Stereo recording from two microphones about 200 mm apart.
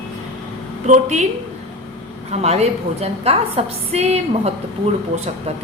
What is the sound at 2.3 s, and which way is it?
A woman's voice, 30° right (ahead or behind).